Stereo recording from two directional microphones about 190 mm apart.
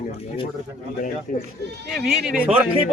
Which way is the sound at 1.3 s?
45° left (ahead or behind).